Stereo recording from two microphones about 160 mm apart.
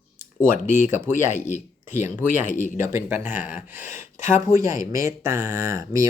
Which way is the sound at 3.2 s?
50° left (ahead or behind).